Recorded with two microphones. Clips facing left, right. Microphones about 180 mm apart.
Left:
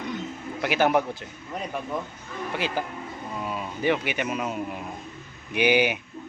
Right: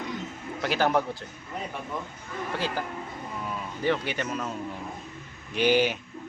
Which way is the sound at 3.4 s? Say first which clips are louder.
Left 2 dB; 20° left (ahead or behind).